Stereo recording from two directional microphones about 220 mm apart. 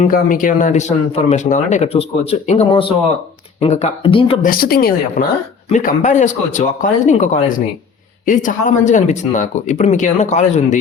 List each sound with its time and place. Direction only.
0.0 s speech: 40° left (ahead or behind)
4.4 s speech: 40° left (ahead or behind)